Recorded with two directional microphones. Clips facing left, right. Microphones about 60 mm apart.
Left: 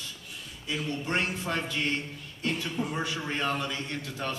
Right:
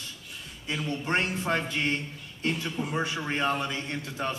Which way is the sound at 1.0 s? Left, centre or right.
Right.